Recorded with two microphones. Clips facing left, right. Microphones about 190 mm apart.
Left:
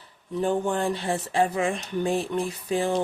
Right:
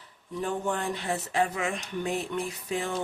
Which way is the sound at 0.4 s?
30° left (ahead or behind).